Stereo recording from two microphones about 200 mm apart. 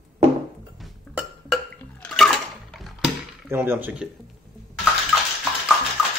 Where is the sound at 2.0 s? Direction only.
Centre (ahead or behind).